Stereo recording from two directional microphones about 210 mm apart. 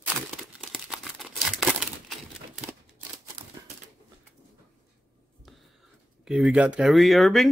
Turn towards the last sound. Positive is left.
turn(degrees=0)  # may be behind; listen again after turning